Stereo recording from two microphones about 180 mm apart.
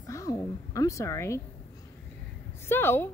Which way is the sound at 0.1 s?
20° left (ahead or behind).